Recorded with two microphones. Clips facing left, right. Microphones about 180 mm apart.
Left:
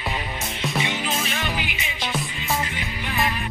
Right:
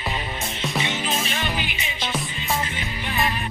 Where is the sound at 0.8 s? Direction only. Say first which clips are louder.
Even; 25° right (ahead or behind).